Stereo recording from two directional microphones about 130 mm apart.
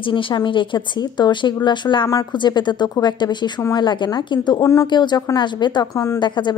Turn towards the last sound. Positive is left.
turn(degrees=35)  # may be behind; listen again after turning